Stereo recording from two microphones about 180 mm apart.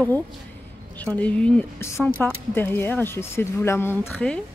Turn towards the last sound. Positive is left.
turn(degrees=5)  # may be behind; listen again after turning